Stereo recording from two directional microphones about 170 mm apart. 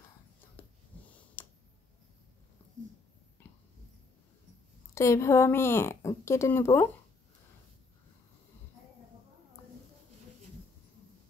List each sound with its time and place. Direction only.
0.9 s tick: 10° left (ahead or behind)
3.4 s a sound: 10° left (ahead or behind)
4.9 s speech: 15° left (ahead or behind)